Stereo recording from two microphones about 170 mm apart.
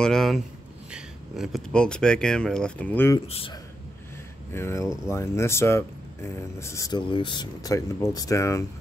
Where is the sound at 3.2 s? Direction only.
35° left (ahead or behind).